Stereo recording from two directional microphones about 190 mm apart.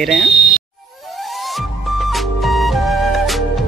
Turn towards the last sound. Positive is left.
turn(degrees=0)  # may be behind; listen again after turning